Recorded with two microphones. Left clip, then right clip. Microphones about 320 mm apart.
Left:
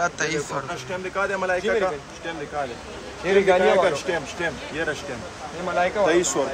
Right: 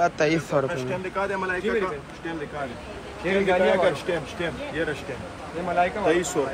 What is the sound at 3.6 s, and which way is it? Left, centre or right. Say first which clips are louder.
Speech: left 2 dB; left.